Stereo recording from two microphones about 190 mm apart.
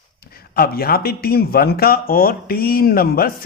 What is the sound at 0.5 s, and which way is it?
Speech, 55° left (ahead or behind).